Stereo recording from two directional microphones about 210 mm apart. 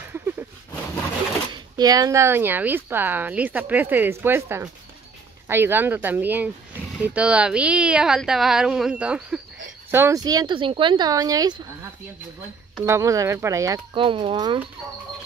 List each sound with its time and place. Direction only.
1.5 s speech: 20° right (ahead or behind)
12.8 s speech: 15° right (ahead or behind)